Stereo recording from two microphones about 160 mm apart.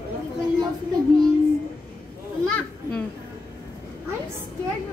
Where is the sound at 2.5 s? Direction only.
5° left (ahead or behind).